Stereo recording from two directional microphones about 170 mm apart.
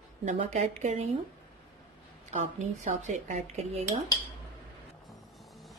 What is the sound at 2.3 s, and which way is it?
Speech, 45° right (ahead or behind).